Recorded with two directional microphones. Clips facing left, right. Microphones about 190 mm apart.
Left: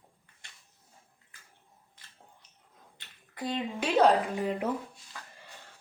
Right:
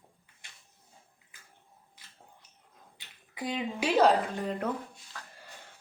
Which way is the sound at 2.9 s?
10° right (ahead or behind).